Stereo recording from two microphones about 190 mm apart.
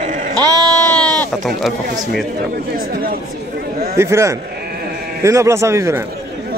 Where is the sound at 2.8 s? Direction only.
50° right (ahead or behind).